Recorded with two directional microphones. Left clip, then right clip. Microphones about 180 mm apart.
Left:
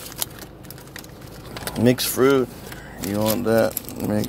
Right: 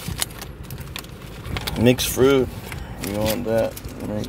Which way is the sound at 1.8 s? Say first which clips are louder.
Right 1 dB; 10° left (ahead or behind).